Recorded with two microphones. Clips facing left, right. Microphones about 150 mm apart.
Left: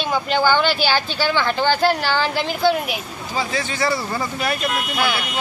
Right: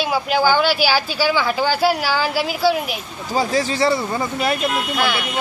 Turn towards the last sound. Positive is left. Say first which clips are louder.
# right 1 dB
turn(degrees=0)  # may be behind; listen again after turning